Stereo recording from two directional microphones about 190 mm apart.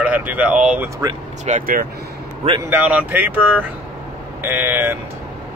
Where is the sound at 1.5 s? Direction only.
45° right (ahead or behind).